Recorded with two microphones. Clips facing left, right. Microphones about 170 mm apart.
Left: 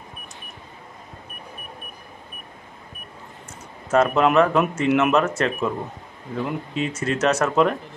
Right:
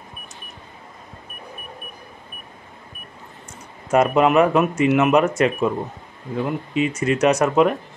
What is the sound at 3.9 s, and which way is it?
Speech, 10° right (ahead or behind).